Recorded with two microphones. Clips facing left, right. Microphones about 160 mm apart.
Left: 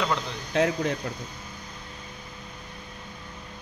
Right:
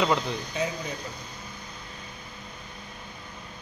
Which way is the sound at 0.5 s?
85° left.